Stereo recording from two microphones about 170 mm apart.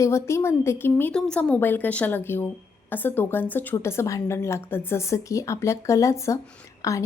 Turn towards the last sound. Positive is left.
turn(degrees=20)  # may be behind; listen again after turning